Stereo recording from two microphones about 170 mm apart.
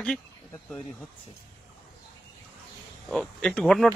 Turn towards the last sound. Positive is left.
turn(degrees=0)  # may be behind; listen again after turning